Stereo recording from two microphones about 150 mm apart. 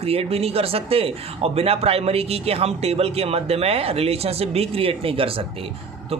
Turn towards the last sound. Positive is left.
turn(degrees=-40)  # may be behind; listen again after turning